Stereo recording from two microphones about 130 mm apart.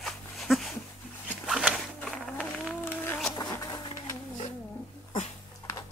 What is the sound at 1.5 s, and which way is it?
Zipper, 5° right (ahead or behind).